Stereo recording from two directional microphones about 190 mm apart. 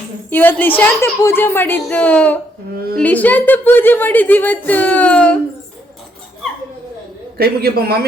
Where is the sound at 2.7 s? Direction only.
50° right (ahead or behind).